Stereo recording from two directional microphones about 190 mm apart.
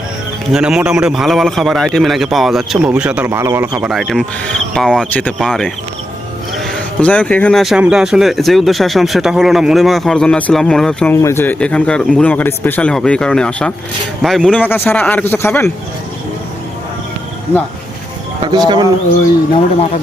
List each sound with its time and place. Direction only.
0.5 s speech: 5° right (ahead or behind)
3.7 s a man's voice: 5° right (ahead or behind); by 15.7 s 15° left (ahead or behind)
18.4 s speech: 20° right (ahead or behind)